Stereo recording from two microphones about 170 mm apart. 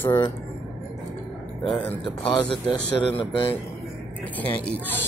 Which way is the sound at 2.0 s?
30° left (ahead or behind).